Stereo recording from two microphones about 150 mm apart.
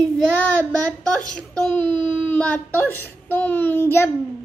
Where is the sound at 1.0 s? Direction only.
5° left (ahead or behind).